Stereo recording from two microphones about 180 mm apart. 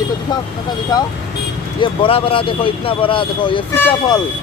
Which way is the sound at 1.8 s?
30° left (ahead or behind).